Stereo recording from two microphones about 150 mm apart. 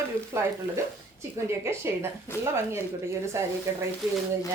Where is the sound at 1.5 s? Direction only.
15° right (ahead or behind).